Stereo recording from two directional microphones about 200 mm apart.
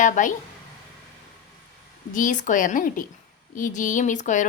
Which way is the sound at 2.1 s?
40° left (ahead or behind).